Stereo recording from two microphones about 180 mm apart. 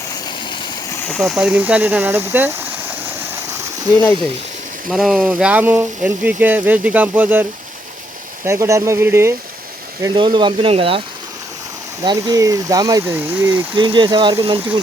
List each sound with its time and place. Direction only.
0.1 s vehicle: 25° left (ahead or behind)
1.0 s speech: centre (ahead or behind)
4.9 s speech: centre (ahead or behind)
8.4 s speech: 15° right (ahead or behind)
10.2 s speech: 25° right (ahead or behind)
12.0 s speech: 20° right (ahead or behind)
13.7 s speech: 25° right (ahead or behind)